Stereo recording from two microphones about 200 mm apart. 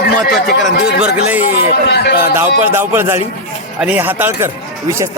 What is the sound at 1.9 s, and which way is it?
Speech, 55° left (ahead or behind).